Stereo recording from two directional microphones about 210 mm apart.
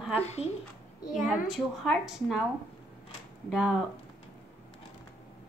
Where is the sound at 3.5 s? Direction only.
Centre (ahead or behind).